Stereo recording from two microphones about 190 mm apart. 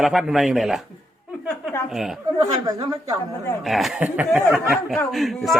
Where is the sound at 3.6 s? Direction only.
Centre (ahead or behind).